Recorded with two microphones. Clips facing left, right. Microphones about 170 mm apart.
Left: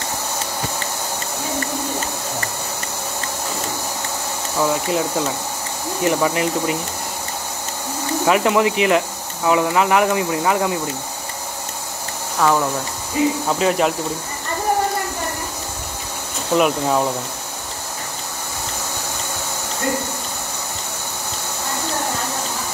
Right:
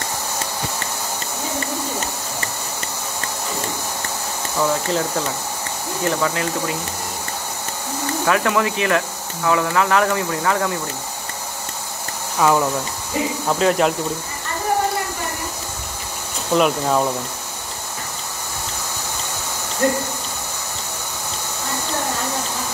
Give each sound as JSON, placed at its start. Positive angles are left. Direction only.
{"t": 4.6, "sound": "speech", "side_deg": 10}
{"t": 8.3, "sound": "speech", "side_deg": 20}
{"t": 12.4, "sound": "speech", "side_deg": -5}
{"t": 16.5, "sound": "speech", "side_deg": 5}